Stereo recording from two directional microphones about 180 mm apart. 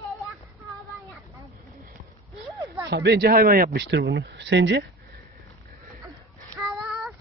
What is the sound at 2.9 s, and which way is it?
A man's voice, 65° right (ahead or behind).